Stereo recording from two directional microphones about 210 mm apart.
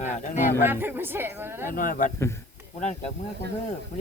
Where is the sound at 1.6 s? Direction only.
40° left (ahead or behind).